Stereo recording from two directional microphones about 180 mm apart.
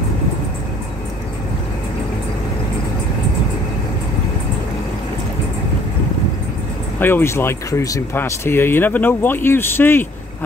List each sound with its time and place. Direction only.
7.0 s speech: 10° left (ahead or behind)